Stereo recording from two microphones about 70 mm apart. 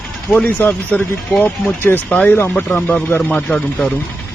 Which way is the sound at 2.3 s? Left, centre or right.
Left.